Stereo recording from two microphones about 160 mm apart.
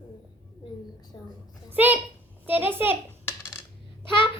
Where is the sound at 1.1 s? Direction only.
25° left (ahead or behind).